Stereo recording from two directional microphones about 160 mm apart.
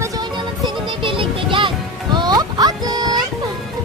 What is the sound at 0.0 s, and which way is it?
Music, 25° right (ahead or behind).